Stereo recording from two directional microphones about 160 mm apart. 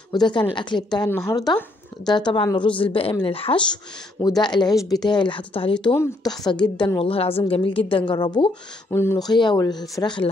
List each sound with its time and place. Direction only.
0.1 s a woman's voice: 30° left (ahead or behind)
7.0 s speech: 35° left (ahead or behind)
8.9 s a woman's voice: 15° left (ahead or behind)